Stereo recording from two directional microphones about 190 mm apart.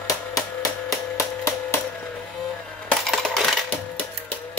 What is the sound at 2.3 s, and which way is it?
Coin, centre (ahead or behind).